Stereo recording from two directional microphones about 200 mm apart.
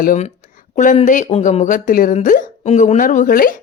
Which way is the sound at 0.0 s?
40° left (ahead or behind).